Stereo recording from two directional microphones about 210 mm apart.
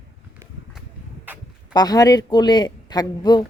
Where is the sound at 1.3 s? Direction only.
10° right (ahead or behind).